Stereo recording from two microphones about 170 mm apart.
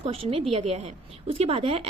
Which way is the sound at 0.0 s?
35° right (ahead or behind).